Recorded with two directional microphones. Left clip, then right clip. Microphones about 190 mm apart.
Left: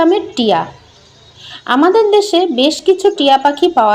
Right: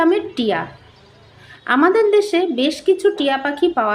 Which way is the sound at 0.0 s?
15° left (ahead or behind).